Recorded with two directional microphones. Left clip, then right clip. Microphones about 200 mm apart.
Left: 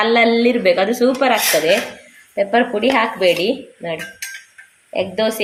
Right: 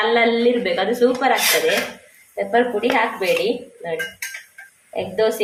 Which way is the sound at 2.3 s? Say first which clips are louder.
Left 2 dB; 45° left (ahead or behind).